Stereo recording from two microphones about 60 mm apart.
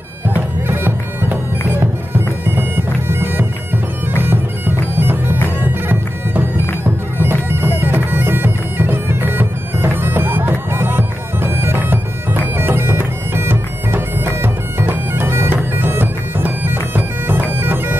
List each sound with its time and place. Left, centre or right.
0.3 s bagpipes: right